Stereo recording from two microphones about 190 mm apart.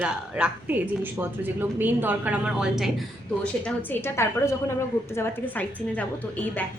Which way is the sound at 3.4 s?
10° left (ahead or behind).